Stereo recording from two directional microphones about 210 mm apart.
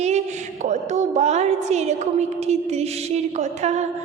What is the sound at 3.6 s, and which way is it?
Speech, 30° right (ahead or behind).